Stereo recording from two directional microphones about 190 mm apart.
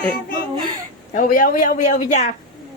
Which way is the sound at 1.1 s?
45° left (ahead or behind).